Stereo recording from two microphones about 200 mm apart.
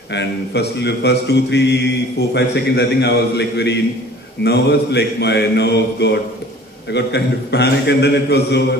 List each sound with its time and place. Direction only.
0.1 s a man's voice: 60° left (ahead or behind)